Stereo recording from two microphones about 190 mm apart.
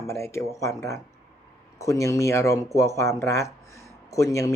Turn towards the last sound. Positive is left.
turn(degrees=15)  # may be behind; listen again after turning